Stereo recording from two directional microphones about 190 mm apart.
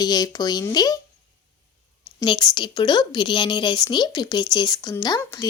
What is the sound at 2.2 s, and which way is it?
Speech, 25° left (ahead or behind).